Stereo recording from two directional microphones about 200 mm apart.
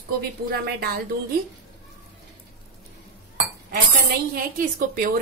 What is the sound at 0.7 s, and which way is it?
Speech, 55° right (ahead or behind).